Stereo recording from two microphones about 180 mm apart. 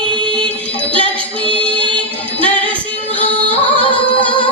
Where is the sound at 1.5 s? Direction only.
5° left (ahead or behind).